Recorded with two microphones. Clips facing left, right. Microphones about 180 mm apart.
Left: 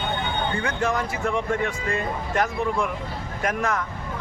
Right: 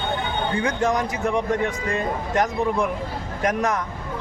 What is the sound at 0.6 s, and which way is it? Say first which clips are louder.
Speech: right 5 dB; 15° right (ahead or behind).